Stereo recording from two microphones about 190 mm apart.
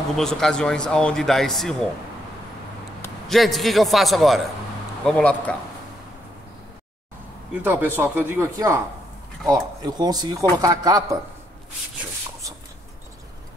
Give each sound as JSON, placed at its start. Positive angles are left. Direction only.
{"t": 0.1, "sound": "speech", "side_deg": 5}
{"t": 3.3, "sound": "speech", "side_deg": 0}
{"t": 7.6, "sound": "speech", "side_deg": -10}